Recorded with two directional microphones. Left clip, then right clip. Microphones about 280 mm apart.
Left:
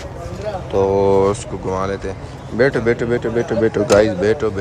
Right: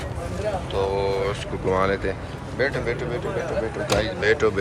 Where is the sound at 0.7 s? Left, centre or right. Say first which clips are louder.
Left 11 dB; left.